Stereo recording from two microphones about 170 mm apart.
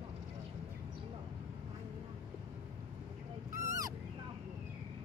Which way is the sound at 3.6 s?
20° right (ahead or behind).